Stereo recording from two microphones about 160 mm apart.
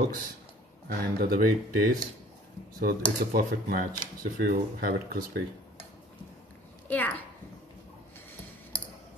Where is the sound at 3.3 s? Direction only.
60° right (ahead or behind).